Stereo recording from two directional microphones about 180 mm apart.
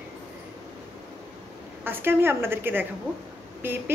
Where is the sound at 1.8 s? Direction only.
10° right (ahead or behind).